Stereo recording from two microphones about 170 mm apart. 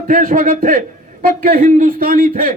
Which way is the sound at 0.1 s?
50° right (ahead or behind).